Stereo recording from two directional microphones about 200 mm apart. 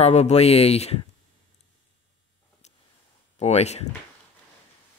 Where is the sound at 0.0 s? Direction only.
35° left (ahead or behind).